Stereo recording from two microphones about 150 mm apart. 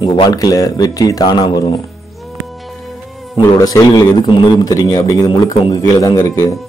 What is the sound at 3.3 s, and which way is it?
Speech, 25° left (ahead or behind).